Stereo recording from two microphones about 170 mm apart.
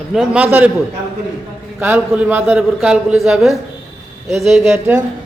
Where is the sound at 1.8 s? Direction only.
10° right (ahead or behind).